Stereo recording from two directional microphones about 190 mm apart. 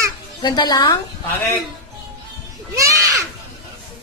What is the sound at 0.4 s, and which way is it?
Speech, 20° left (ahead or behind).